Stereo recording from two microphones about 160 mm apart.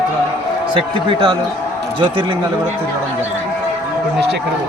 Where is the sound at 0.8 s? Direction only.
30° right (ahead or behind).